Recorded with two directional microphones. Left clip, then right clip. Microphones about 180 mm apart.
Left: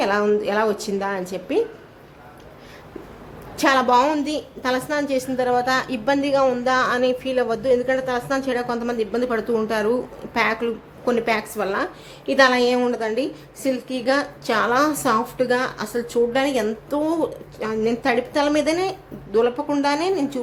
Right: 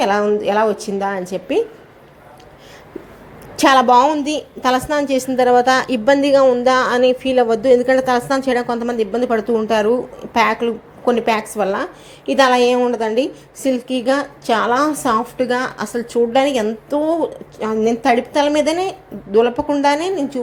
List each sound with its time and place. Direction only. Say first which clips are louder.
0.0 s a woman's voice: right 4 dB; 15° right (ahead or behind)
3.6 s a woman's voice: right 6 dB; 20° right (ahead or behind)